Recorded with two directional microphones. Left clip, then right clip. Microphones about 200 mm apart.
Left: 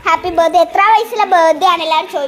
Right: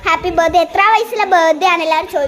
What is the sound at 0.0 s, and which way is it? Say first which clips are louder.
A child's voice: left 1 dB; 10° right (ahead or behind).